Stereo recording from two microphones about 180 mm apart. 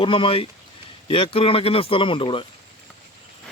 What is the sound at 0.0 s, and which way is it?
Speech, 30° left (ahead or behind).